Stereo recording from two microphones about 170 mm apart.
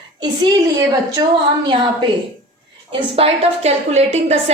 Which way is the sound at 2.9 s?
35° right (ahead or behind).